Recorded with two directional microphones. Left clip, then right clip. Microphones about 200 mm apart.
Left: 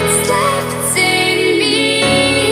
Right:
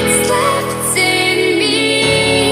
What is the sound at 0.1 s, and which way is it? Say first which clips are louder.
Music: right 1 dB; centre (ahead or behind).